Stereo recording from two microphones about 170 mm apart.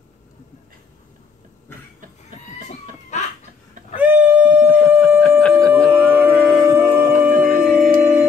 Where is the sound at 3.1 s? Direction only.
45° left (ahead or behind).